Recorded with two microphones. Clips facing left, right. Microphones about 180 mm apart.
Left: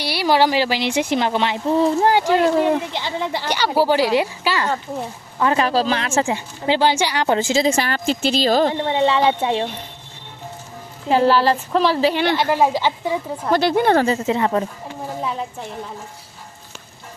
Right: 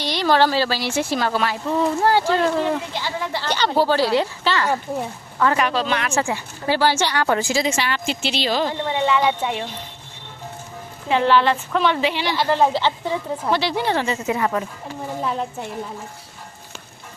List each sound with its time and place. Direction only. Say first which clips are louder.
0.0 s speech: left 1 dB; 10° left (ahead or behind)
1.6 s a woman's voice: left 5 dB; 30° left (ahead or behind)
2.0 s a woman's voice: left 2 dB; 15° left (ahead or behind)
5.6 s speech: left 3 dB; 35° left (ahead or behind); by 7.3 s 15° left (ahead or behind)
7.3 s speech: left 6 dB; 25° left (ahead or behind)
7.8 s a woman's voice: left 4 dB; 40° left (ahead or behind)
8.9 s speech: left 3 dB; 30° left (ahead or behind)
11.1 s a woman's voice: left 2 dB; 35° left (ahead or behind)
12.1 s a woman's voice: left 5 dB; 55° left (ahead or behind)
12.4 s speech: left 1 dB; 10° left (ahead or behind)
13.5 s a woman's voice: left 6 dB; 50° left (ahead or behind)
14.0 s speech: left 3 dB; 30° left (ahead or behind)
15.2 s a woman's voice: right 1 dB; centre (ahead or behind)